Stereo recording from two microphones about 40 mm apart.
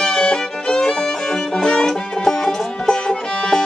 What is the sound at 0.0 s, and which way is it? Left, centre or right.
Music, centre.